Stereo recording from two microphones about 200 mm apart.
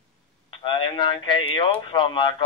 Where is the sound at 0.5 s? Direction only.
25° left (ahead or behind).